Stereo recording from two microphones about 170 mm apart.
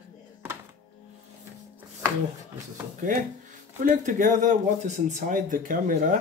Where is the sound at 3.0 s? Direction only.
50° right (ahead or behind).